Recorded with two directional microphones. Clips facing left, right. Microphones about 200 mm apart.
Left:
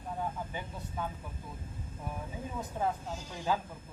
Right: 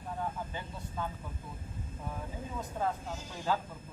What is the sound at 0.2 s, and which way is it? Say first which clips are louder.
Vehicle: left 1 dB; 15° left (ahead or behind).